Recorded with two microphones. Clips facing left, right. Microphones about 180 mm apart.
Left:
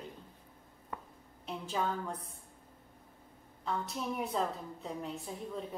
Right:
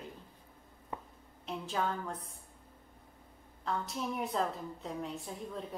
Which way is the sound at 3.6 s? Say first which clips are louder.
Even; centre (ahead or behind).